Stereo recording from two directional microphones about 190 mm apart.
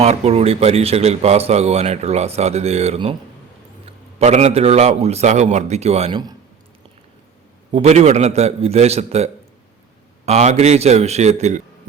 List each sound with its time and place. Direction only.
0.0 s speech: 35° right (ahead or behind)
4.2 s speech: 35° right (ahead or behind)
7.7 s speech: 35° right (ahead or behind)